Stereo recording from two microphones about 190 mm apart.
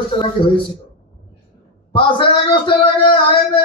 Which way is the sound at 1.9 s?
25° left (ahead or behind).